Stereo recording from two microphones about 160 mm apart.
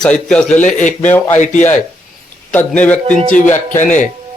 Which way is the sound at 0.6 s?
50° left (ahead or behind).